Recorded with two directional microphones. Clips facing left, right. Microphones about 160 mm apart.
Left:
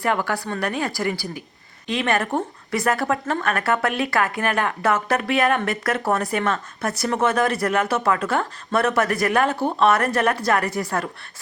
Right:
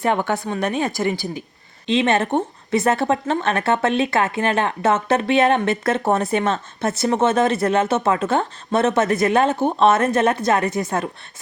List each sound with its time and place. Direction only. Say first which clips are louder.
0.0 s speech: right 3 dB; 25° right (ahead or behind)